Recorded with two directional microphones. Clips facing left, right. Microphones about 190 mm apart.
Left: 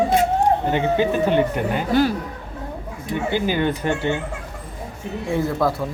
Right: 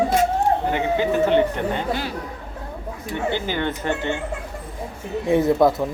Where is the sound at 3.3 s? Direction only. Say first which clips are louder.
Left 6 dB; 15° left (ahead or behind).